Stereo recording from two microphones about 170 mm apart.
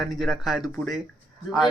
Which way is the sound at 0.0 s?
Centre (ahead or behind).